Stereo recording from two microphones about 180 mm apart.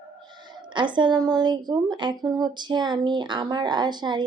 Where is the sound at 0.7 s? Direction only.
25° right (ahead or behind).